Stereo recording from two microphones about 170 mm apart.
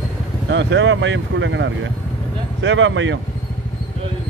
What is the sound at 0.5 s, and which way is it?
Speech, 90° right.